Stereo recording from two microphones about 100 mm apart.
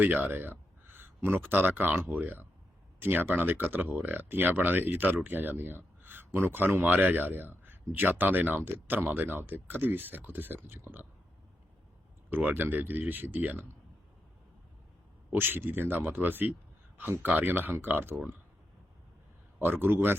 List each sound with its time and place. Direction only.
0.0 s speech: 20° right (ahead or behind)
12.3 s speech: 20° right (ahead or behind)
15.3 s speech: 20° right (ahead or behind)
19.5 s speech: 20° right (ahead or behind)